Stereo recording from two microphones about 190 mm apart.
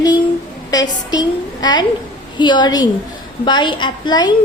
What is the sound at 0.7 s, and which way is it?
A woman's voice, 20° left (ahead or behind).